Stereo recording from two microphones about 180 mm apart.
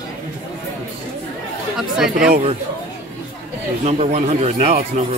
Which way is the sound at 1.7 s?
5° right (ahead or behind).